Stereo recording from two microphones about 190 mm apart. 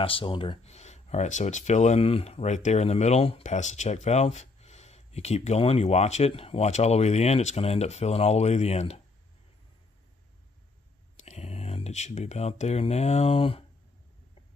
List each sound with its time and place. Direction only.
0.0 s speech: 25° left (ahead or behind)
11.2 s speech: 35° left (ahead or behind)